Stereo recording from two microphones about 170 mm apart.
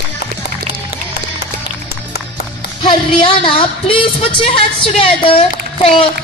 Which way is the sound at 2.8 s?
30° left (ahead or behind).